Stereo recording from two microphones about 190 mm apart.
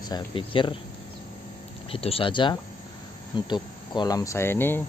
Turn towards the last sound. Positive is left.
turn(degrees=10)  # may be behind; listen again after turning